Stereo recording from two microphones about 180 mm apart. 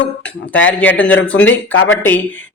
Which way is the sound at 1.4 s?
90° left.